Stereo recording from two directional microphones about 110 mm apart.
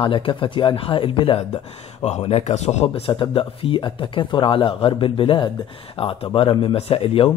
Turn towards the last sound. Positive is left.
turn(degrees=60)  # may be behind; listen again after turning